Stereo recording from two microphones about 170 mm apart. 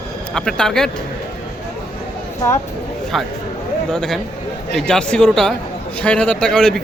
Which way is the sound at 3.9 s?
5° left (ahead or behind).